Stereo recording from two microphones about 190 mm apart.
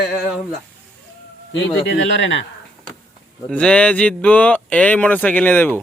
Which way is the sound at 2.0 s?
75° left (ahead or behind).